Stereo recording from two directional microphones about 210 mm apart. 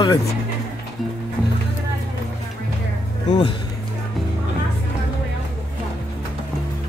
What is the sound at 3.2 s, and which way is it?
Speech, 30° left (ahead or behind).